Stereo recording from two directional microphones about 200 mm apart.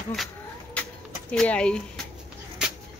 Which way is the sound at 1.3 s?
5° left (ahead or behind).